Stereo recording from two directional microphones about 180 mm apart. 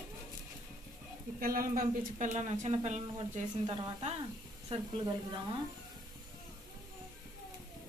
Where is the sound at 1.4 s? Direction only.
50° right (ahead or behind); by 4.9 s 30° right (ahead or behind).